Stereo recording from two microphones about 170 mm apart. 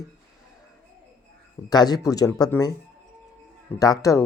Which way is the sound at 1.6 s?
25° left (ahead or behind).